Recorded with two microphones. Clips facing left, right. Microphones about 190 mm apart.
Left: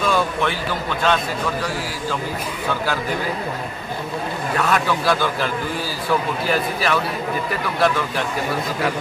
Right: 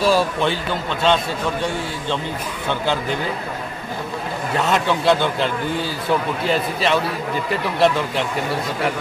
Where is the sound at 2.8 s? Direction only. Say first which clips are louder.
Right 3 dB; 25° right (ahead or behind).